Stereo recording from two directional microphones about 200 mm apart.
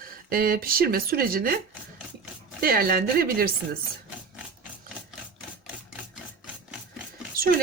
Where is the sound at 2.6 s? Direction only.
50° right (ahead or behind).